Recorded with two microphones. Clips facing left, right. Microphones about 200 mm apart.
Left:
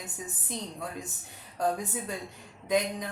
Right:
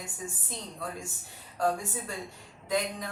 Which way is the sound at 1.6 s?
20° left (ahead or behind).